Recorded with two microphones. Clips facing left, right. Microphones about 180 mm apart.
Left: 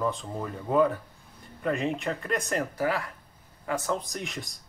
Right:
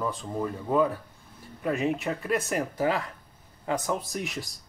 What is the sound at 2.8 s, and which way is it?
A man's voice, 20° right (ahead or behind).